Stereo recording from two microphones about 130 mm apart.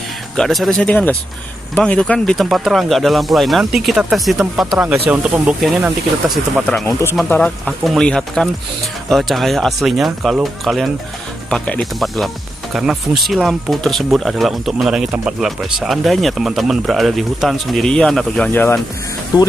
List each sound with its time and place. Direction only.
0.4 s speech: centre (ahead or behind)
18.5 s speech: 15° left (ahead or behind)